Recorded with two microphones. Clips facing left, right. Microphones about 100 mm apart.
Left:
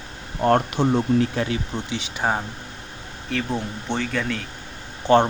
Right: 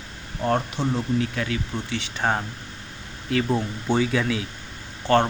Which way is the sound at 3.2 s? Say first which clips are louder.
Right 3 dB; centre (ahead or behind).